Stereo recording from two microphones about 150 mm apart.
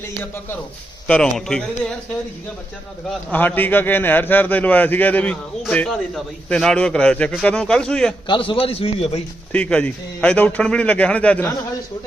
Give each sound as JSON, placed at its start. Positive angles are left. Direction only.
{"t": 1.0, "sound": "speech", "side_deg": 5}
{"t": 3.1, "sound": "a man's voice", "side_deg": 10}
{"t": 8.3, "sound": "a man's voice", "side_deg": 35}
{"t": 9.5, "sound": "a man's voice", "side_deg": 10}